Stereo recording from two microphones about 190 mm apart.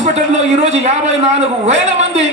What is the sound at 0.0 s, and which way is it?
A man's voice, 35° right (ahead or behind).